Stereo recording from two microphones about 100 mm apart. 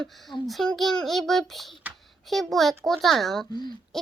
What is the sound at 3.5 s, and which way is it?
Speech, 45° left (ahead or behind).